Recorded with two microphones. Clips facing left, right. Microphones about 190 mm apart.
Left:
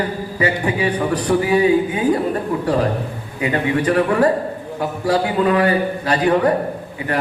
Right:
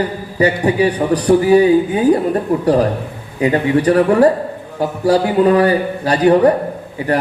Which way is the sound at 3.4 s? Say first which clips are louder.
Right 5 dB; 35° right (ahead or behind).